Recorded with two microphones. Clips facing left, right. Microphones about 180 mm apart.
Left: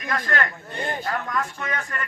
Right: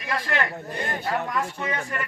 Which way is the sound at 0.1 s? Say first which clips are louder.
Left 1 dB; 5° right (ahead or behind).